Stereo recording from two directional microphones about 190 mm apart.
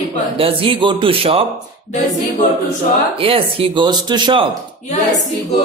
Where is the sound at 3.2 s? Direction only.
30° right (ahead or behind).